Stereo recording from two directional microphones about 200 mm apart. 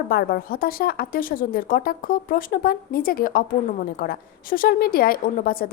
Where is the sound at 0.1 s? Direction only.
50° left (ahead or behind).